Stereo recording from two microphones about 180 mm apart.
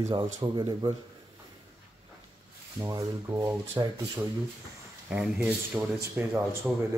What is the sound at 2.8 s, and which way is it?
Speech, 20° right (ahead or behind).